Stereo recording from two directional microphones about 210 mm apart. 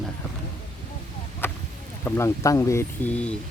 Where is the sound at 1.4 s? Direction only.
10° left (ahead or behind).